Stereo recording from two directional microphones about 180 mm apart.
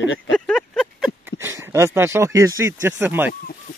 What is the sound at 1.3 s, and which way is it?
Speech, 15° right (ahead or behind).